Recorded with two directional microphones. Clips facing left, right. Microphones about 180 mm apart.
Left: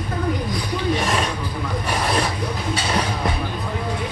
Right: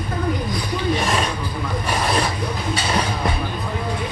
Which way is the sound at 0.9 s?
55° left (ahead or behind).